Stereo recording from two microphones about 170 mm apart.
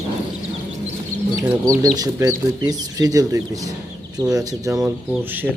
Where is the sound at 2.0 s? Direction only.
20° right (ahead or behind).